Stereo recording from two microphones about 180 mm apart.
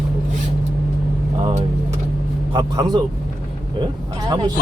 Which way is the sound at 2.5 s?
20° right (ahead or behind).